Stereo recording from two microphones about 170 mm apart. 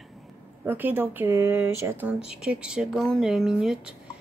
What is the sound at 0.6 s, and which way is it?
Speech, 10° right (ahead or behind).